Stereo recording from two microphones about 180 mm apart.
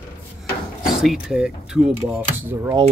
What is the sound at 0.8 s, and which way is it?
Speech, centre (ahead or behind).